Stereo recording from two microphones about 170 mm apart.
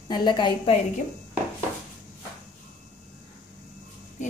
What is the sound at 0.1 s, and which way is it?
Speech, 25° left (ahead or behind).